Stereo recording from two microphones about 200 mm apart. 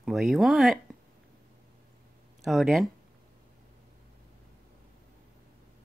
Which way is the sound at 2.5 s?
Centre (ahead or behind).